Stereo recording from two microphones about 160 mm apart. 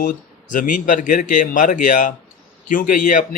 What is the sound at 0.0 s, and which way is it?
Speech, 55° left (ahead or behind).